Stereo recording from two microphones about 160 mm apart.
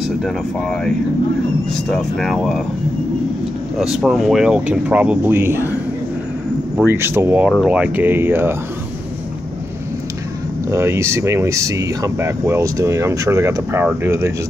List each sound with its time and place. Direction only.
0.2 s speech: 5° left (ahead or behind)
3.7 s speech: centre (ahead or behind)
6.8 s speech: 15° right (ahead or behind)
10.7 s speech: 15° right (ahead or behind)